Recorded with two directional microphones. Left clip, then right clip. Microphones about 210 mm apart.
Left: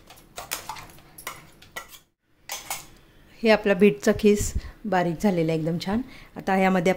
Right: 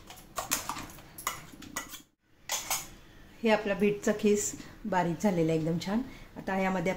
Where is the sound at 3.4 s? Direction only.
45° left (ahead or behind).